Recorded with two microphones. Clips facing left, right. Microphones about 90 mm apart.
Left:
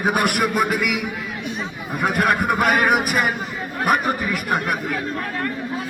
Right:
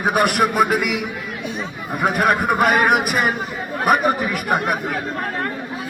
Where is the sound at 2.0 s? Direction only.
Centre (ahead or behind).